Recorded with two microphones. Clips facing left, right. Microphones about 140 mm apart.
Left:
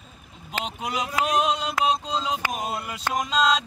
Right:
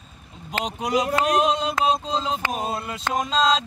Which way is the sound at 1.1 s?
Centre (ahead or behind).